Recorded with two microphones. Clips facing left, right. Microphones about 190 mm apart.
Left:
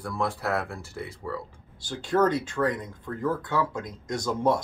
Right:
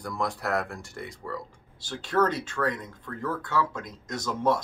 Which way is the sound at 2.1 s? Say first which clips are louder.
Left 2 dB; 20° left (ahead or behind).